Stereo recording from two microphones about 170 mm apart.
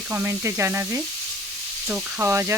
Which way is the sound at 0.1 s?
15° right (ahead or behind).